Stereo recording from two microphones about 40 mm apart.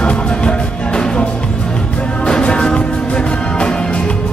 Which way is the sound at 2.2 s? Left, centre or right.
Left.